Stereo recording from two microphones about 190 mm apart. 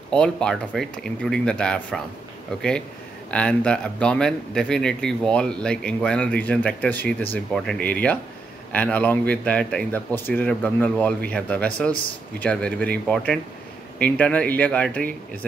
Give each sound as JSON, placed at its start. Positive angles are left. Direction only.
{"t": 0.1, "sound": "speech", "side_deg": 5}
{"t": 3.3, "sound": "speech", "side_deg": 5}